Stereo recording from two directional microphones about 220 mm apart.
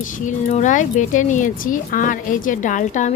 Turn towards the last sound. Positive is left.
turn(degrees=35)  # may be behind; listen again after turning